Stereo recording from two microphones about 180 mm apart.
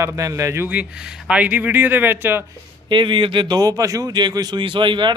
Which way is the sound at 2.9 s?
25° right (ahead or behind).